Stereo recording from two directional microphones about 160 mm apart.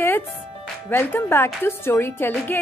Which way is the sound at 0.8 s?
15° left (ahead or behind).